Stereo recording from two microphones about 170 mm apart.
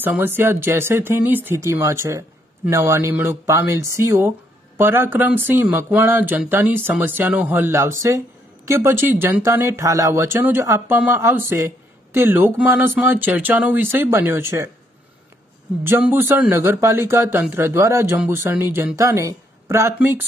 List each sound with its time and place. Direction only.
0.0 s speech: 10° right (ahead or behind)
15.8 s speech: 10° right (ahead or behind)